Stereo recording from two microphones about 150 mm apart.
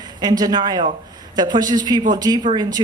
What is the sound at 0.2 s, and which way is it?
Speech, 25° right (ahead or behind).